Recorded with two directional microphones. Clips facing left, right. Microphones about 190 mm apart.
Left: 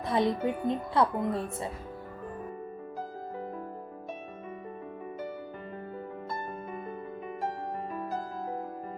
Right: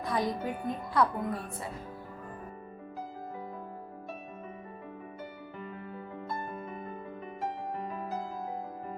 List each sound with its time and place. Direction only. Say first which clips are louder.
0.0 s speech: left 4 dB; 25° left (ahead or behind)